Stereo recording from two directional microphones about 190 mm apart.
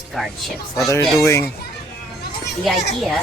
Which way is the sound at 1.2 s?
15° left (ahead or behind).